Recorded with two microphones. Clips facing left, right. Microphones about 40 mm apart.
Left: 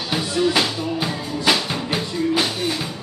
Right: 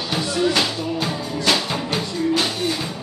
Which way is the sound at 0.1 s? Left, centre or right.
Centre.